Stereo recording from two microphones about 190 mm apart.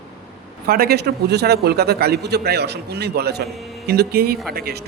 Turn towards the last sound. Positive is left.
turn(degrees=-55)  # may be behind; listen again after turning